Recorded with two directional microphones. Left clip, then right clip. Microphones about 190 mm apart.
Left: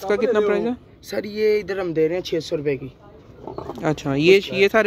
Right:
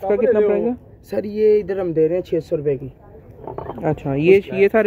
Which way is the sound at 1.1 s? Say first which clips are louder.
Right 4 dB; 25° right (ahead or behind).